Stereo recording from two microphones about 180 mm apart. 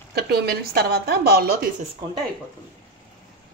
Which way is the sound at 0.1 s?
60° right (ahead or behind).